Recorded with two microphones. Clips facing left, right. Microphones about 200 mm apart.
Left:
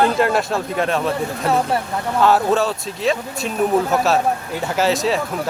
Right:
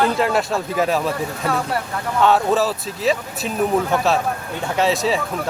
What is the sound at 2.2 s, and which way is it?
Speech, centre (ahead or behind).